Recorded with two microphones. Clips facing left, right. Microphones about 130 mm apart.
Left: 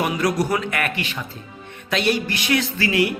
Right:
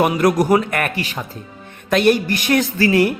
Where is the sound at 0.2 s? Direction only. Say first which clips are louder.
Right 6 dB; 50° right (ahead or behind).